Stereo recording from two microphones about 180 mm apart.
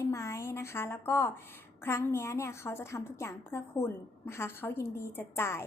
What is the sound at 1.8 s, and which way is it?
A woman's voice, 15° left (ahead or behind).